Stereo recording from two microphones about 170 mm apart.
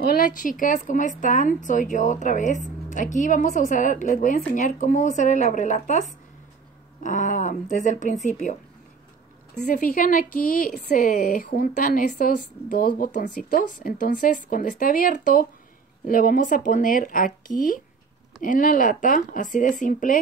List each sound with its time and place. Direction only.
0.1 s a woman's voice: 55° left (ahead or behind)
9.6 s a woman's voice: 50° left (ahead or behind)